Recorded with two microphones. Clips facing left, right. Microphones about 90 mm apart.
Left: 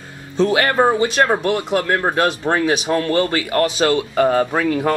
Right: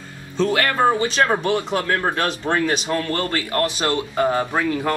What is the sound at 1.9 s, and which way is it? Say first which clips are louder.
Speech: left 4 dB; 15° left (ahead or behind).